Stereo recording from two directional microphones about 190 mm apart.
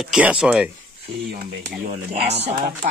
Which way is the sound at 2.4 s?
55° right (ahead or behind).